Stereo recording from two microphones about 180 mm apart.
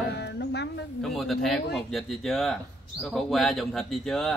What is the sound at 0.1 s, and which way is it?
Music, 70° left (ahead or behind).